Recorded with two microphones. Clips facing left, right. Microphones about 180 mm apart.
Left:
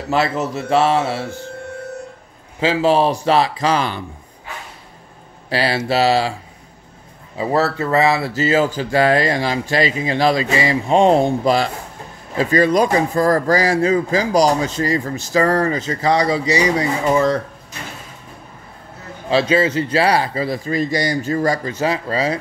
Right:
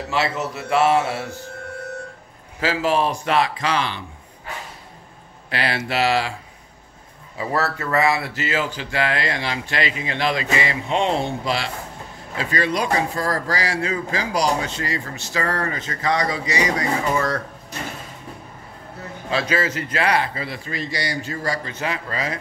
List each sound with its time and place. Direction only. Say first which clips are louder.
0.1 s speech: left 6 dB; 40° left (ahead or behind)
2.6 s speech: left 5 dB; 30° left (ahead or behind)
5.5 s speech: left 6 dB; 35° left (ahead or behind)
7.3 s speech: left 6 dB; 25° left (ahead or behind)
19.3 s speech: left 7 dB; 25° left (ahead or behind)